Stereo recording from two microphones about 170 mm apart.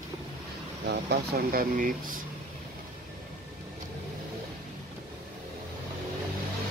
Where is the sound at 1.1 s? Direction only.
65° right (ahead or behind).